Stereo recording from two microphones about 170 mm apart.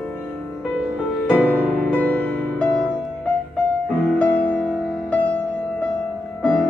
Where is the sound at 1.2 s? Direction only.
10° left (ahead or behind).